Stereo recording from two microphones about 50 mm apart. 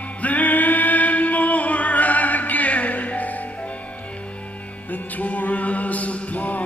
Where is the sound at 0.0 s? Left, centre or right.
Left.